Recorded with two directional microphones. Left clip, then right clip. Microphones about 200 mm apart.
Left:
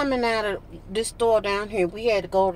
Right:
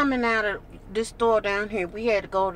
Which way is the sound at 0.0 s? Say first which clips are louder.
Even; 25° left (ahead or behind).